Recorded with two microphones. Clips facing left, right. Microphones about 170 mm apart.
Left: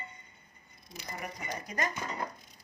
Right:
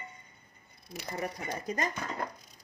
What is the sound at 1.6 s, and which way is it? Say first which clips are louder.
Speech: right 2 dB; 25° right (ahead or behind).